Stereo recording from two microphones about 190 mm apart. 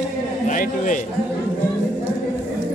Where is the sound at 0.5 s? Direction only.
45° left (ahead or behind).